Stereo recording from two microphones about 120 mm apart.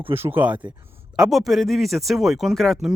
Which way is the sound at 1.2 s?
Centre (ahead or behind).